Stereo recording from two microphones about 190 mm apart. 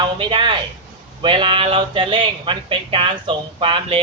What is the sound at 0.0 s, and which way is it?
Speech, 25° right (ahead or behind).